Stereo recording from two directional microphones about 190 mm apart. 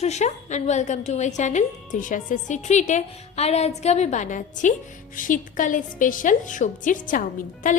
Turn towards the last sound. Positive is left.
turn(degrees=45)  # may be behind; listen again after turning